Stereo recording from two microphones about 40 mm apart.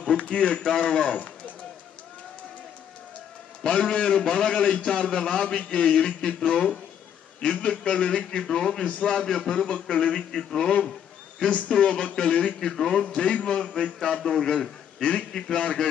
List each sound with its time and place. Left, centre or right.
0.2 s speech: left
3.6 s speech: left
4.6 s a man's voice: left
10.3 s a man's voice: centre
11.4 s speech: left
12.5 s a man's voice: centre
13.2 s speech: left
13.9 s a man's voice: centre
15.0 s a man's voice: left